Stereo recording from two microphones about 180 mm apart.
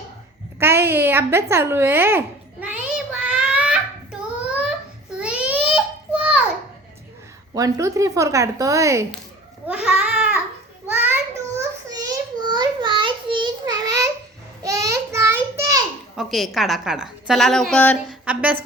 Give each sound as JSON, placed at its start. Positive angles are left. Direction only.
{"t": 0.6, "sound": "a sound", "side_deg": -15}
{"t": 5.1, "sound": "babbling", "side_deg": -5}
{"t": 7.5, "sound": "speech", "side_deg": -20}
{"t": 9.6, "sound": "babbling", "side_deg": -5}
{"t": 10.9, "sound": "a sound", "side_deg": -10}
{"t": 16.1, "sound": "a woman's voice", "side_deg": 0}